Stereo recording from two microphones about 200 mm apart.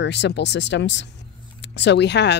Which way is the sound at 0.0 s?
60° left (ahead or behind).